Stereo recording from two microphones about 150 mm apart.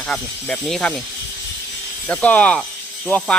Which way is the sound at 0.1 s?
5° left (ahead or behind).